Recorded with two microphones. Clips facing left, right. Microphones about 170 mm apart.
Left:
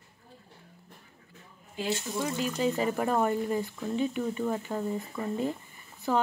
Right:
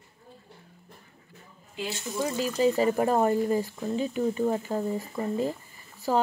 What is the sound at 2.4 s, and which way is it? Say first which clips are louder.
Speech: right 6 dB; 5° right (ahead or behind).